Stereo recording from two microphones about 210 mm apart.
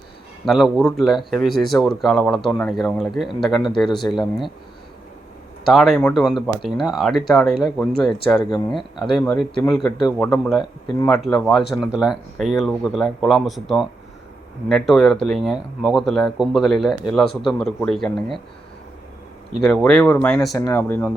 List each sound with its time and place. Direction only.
0.4 s speech: centre (ahead or behind)
5.6 s speech: centre (ahead or behind)
8.4 s speech: 20° left (ahead or behind)
8.7 s speech: centre (ahead or behind)
19.6 s speech: 5° left (ahead or behind)